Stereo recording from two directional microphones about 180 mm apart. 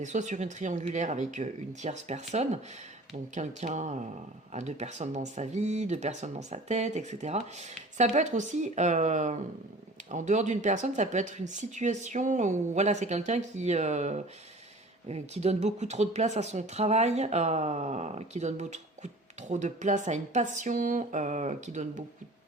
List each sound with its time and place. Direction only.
0.0 s speech: 40° right (ahead or behind)